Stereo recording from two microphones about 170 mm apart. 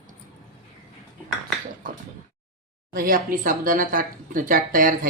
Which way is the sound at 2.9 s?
55° right (ahead or behind).